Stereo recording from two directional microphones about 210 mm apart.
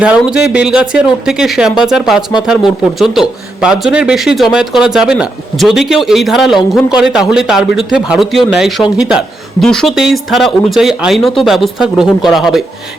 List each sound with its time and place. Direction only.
0.0 s speech: 5° right (ahead or behind)